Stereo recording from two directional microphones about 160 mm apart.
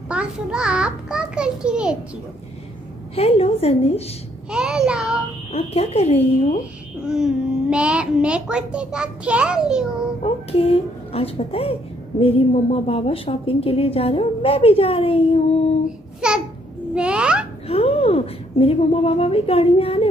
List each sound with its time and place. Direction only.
0.1 s a child's voice: 5° right (ahead or behind)
3.2 s a woman's voice: 40° left (ahead or behind)
4.5 s a child's voice: 5° right (ahead or behind)
5.5 s a woman's voice: 40° left (ahead or behind)
7.1 s a child's voice: 5° right (ahead or behind)
10.2 s a woman's voice: 40° left (ahead or behind)
12.7 s a woman's voice: 40° left (ahead or behind)
16.2 s a child's voice: 5° right (ahead or behind)
17.6 s a woman's voice: 40° left (ahead or behind)